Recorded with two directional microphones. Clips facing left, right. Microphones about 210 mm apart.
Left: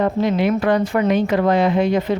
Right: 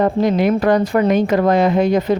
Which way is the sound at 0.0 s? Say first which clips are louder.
Right 3 dB; 40° right (ahead or behind).